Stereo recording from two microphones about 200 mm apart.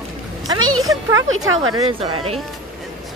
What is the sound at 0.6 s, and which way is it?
Speech, 90° right.